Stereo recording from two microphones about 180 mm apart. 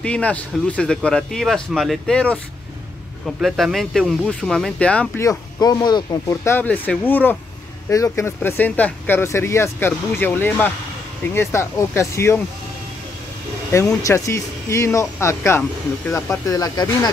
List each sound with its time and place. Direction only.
0.0 s speech: 5° left (ahead or behind)
5.6 s speech: 20° left (ahead or behind)
14.0 s speech: 15° left (ahead or behind)